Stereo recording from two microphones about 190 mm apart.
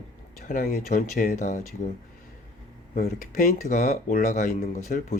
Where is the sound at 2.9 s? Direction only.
50° left (ahead or behind).